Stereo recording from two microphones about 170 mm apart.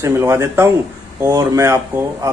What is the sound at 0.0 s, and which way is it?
Speech, 15° right (ahead or behind).